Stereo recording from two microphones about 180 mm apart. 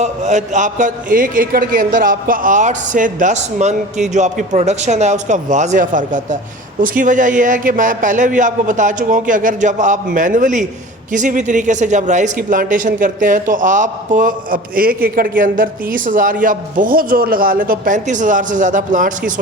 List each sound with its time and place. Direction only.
0.0 s speech: 40° right (ahead or behind)